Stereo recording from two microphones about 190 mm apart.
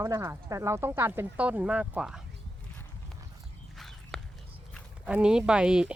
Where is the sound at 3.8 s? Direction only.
Centre (ahead or behind).